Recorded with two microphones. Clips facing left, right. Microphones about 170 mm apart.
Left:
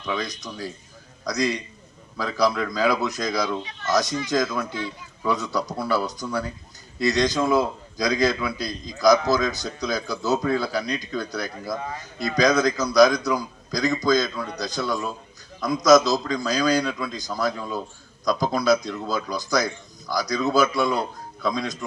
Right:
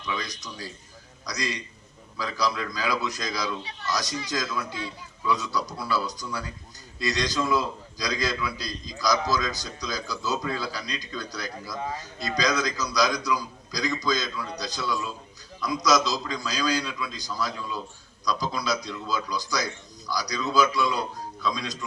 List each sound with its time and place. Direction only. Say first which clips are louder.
0.0 s a man's voice: left 5 dB; 50° left (ahead or behind)